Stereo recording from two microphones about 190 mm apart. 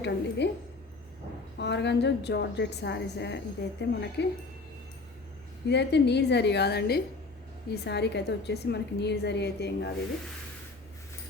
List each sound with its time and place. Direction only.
0.0 s a woman's voice: 60° left (ahead or behind)
1.5 s a woman's voice: 65° left (ahead or behind)
5.6 s a woman's voice: 65° left (ahead or behind)